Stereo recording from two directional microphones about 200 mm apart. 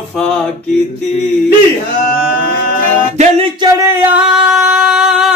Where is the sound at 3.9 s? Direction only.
10° right (ahead or behind).